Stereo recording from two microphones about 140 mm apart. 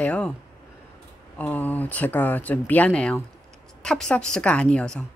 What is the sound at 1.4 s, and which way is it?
Speech, 10° left (ahead or behind).